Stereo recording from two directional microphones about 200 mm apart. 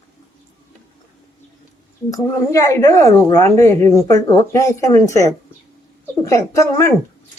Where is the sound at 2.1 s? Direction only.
15° left (ahead or behind).